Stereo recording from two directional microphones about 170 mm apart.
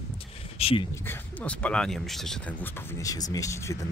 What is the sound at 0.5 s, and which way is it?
Speech, 35° left (ahead or behind).